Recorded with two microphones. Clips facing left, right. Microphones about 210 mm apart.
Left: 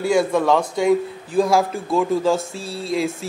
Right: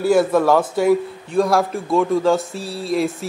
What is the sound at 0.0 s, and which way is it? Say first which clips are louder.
A man's voice: right 3 dB; 5° right (ahead or behind).